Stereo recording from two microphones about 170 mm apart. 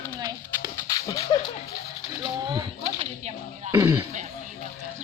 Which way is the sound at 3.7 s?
20° right (ahead or behind).